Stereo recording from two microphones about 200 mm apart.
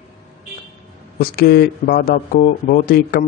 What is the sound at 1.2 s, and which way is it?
Speech, 50° left (ahead or behind).